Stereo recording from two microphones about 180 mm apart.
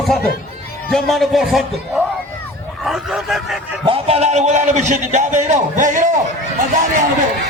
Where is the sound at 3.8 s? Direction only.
30° right (ahead or behind).